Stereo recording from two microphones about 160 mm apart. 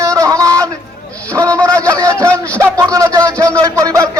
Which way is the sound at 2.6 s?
20° right (ahead or behind).